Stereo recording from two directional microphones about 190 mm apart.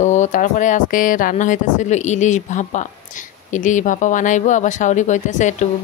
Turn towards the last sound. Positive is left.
turn(degrees=40)  # may be behind; listen again after turning